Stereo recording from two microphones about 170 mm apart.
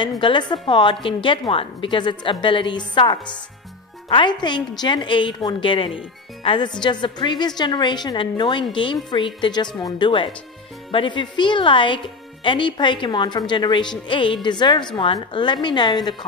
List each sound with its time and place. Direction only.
0.0 s a woman's voice: 30° left (ahead or behind)